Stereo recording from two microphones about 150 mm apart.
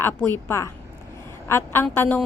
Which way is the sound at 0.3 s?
15° left (ahead or behind).